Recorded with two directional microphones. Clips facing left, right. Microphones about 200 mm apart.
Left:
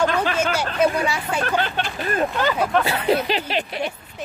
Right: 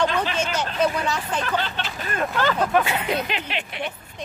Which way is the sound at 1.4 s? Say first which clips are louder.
Left 3 dB; 50° left (ahead or behind).